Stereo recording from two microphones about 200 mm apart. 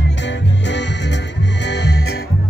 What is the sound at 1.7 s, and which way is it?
Music, 60° left (ahead or behind).